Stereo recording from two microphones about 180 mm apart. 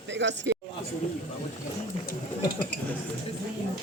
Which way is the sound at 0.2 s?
80° right.